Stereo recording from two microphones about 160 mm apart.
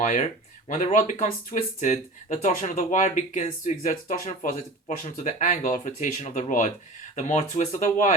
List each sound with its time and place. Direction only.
0.0 s speech: 50° left (ahead or behind)